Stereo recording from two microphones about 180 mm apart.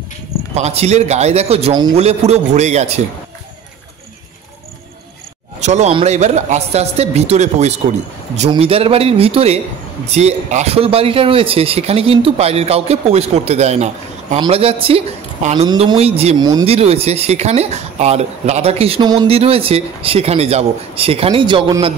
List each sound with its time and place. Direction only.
0.6 s speech: 35° right (ahead or behind)
5.6 s speech: 40° right (ahead or behind)
16.3 s speech: 25° right (ahead or behind)